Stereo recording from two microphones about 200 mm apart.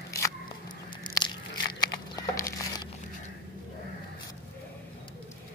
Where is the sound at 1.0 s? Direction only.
20° left (ahead or behind).